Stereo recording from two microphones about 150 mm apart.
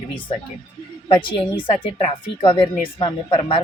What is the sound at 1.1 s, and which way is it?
Speech, 35° left (ahead or behind).